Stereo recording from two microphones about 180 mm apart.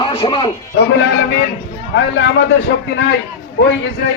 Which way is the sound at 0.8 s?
70° left (ahead or behind).